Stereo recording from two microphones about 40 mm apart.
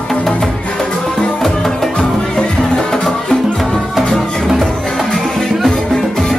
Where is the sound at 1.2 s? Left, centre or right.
Left.